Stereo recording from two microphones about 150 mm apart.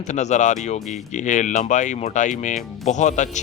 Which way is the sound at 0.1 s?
50° left (ahead or behind).